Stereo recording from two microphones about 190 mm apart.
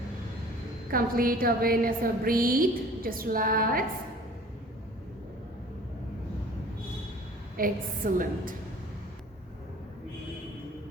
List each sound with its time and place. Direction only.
0.9 s a woman's voice: 50° right (ahead or behind)
7.5 s a woman's voice: 45° right (ahead or behind)